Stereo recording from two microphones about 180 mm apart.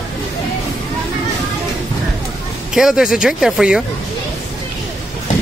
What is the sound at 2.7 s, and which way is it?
Speech, centre (ahead or behind).